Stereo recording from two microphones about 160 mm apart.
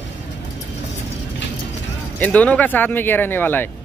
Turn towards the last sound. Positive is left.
turn(degrees=10)  # may be behind; listen again after turning